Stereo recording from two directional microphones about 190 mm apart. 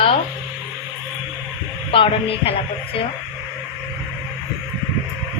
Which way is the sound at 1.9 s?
30° left (ahead or behind).